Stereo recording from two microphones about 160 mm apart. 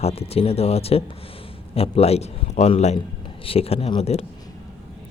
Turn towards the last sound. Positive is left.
turn(degrees=40)  # may be behind; listen again after turning